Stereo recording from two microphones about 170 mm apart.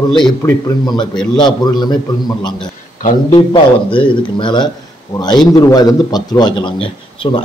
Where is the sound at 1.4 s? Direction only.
25° left (ahead or behind).